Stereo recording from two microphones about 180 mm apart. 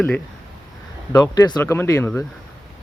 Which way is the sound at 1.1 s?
20° left (ahead or behind).